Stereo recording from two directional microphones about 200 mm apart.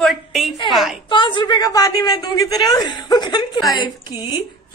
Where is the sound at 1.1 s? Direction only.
25° left (ahead or behind).